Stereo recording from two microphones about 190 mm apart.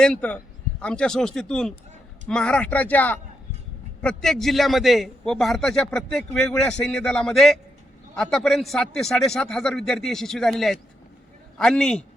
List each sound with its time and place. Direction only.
0.0 s a man's voice: 5° left (ahead or behind)